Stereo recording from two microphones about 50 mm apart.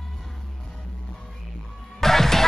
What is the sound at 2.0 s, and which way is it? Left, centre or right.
Music, centre.